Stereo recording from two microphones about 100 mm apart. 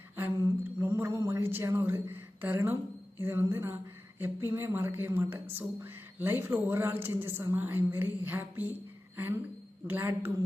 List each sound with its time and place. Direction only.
0.3 s a woman's voice: 30° right (ahead or behind)